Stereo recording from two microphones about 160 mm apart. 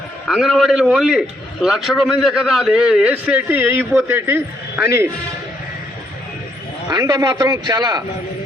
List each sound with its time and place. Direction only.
0.3 s a man's voice: centre (ahead or behind); by 5.0 s 15° right (ahead or behind)
6.8 s a man's voice: 25° right (ahead or behind)